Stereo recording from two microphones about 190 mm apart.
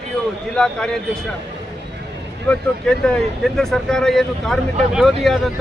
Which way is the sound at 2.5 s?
5° left (ahead or behind).